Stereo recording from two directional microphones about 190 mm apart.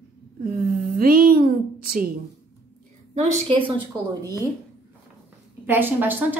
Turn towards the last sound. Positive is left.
turn(degrees=-10)  # may be behind; listen again after turning